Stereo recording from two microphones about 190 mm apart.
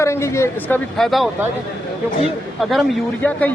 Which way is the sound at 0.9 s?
Centre (ahead or behind).